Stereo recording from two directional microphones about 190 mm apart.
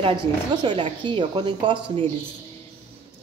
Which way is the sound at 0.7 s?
25° right (ahead or behind).